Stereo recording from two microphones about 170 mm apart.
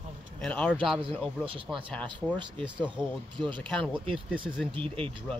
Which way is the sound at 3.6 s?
5° left (ahead or behind).